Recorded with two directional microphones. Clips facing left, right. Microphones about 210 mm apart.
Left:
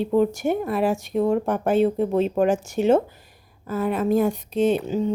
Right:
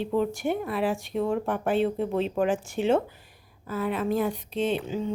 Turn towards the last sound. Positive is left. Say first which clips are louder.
# left 6 dB
turn(degrees=45)  # may be behind; listen again after turning